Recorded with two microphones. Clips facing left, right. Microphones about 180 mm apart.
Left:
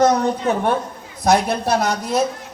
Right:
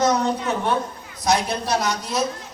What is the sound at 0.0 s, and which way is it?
A woman's voice, 55° left (ahead or behind).